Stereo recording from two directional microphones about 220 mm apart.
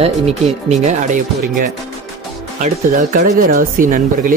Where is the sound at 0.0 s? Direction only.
30° right (ahead or behind).